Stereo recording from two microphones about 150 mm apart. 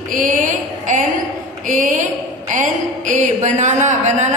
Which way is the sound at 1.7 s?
60° right (ahead or behind).